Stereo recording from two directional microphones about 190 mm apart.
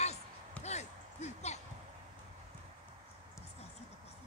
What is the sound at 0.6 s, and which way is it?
Speech, 35° left (ahead or behind).